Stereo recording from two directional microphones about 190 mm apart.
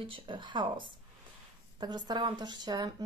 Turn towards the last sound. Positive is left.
turn(degrees=-20)  # may be behind; listen again after turning